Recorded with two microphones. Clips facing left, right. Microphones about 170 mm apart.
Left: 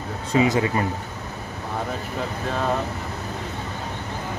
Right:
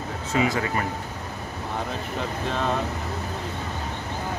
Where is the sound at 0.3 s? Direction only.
20° left (ahead or behind).